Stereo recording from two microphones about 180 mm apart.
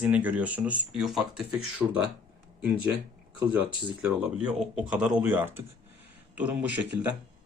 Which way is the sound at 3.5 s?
10° right (ahead or behind).